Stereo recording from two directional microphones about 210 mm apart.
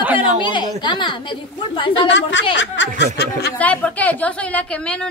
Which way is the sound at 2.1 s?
60° left (ahead or behind).